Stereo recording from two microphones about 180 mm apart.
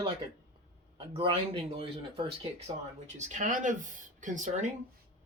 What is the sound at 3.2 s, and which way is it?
Speech, 45° right (ahead or behind).